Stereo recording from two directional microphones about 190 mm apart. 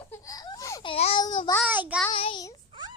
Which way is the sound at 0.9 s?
30° left (ahead or behind).